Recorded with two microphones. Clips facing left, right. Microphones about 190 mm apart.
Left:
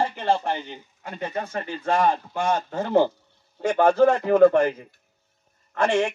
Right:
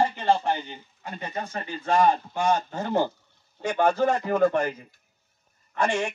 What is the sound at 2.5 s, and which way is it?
Speech, 30° left (ahead or behind).